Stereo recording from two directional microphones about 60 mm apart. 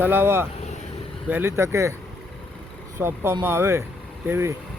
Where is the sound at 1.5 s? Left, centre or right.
Right.